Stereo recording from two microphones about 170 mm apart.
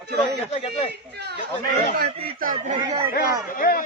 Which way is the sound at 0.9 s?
75° right (ahead or behind).